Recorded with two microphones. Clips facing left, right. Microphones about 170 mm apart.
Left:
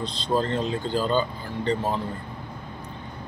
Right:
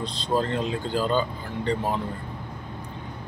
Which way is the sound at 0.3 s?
10° right (ahead or behind).